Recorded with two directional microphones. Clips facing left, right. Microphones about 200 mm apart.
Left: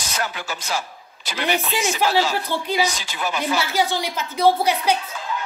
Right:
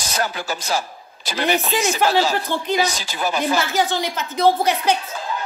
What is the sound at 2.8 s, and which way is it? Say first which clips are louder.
Speech: right 2 dB; 35° right (ahead or behind).